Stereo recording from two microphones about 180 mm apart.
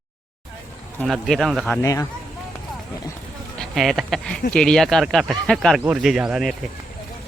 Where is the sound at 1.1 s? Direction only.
Centre (ahead or behind).